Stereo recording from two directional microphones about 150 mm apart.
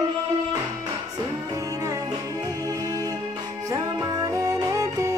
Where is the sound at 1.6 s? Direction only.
25° right (ahead or behind).